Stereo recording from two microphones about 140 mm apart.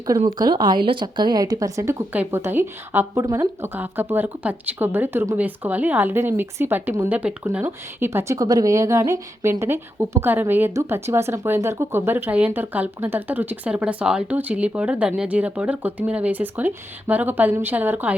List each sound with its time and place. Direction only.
0.3 s speech: 30° right (ahead or behind); by 18.1 s 10° right (ahead or behind)